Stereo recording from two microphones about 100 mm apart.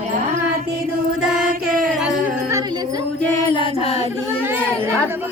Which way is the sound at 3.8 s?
90° left.